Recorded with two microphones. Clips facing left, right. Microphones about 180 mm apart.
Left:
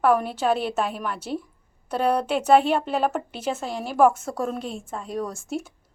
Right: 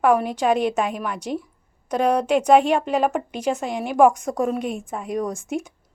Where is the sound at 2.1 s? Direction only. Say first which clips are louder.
Right 3 dB; 10° right (ahead or behind).